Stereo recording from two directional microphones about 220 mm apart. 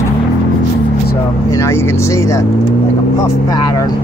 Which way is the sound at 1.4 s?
15° left (ahead or behind).